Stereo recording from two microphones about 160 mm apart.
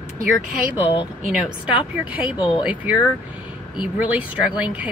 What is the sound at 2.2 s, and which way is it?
Speech, 30° left (ahead or behind).